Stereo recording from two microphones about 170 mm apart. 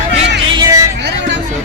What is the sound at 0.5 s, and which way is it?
Vehicle, 20° right (ahead or behind).